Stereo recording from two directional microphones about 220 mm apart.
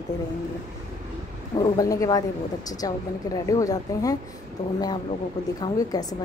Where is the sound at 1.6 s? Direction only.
15° left (ahead or behind).